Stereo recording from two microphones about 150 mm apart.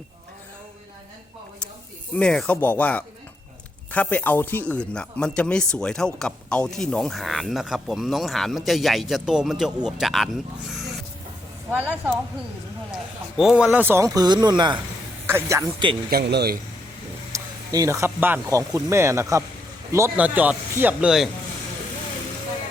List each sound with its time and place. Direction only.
2.1 s speech: 5° left (ahead or behind)
11.7 s speech: 10° right (ahead or behind); by 14.8 s 30° right (ahead or behind)
15.3 s speech: 20° right (ahead or behind)
16.0 s speech: 90° right
17.3 s speech: 20° right (ahead or behind); by 21.2 s 5° right (ahead or behind)